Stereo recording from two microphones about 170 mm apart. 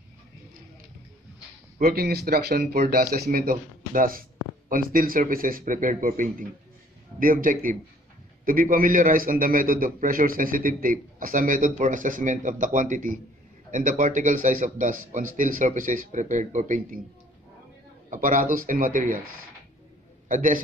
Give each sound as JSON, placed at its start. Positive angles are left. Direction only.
{"t": 1.8, "sound": "a man's voice", "side_deg": -65}
{"t": 18.1, "sound": "a man's voice", "side_deg": -50}
{"t": 20.2, "sound": "a man's voice", "side_deg": -50}